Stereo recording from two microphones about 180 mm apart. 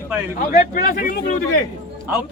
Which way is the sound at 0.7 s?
55° left (ahead or behind).